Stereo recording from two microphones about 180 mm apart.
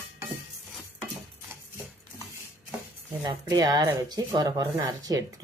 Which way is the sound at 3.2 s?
20° right (ahead or behind).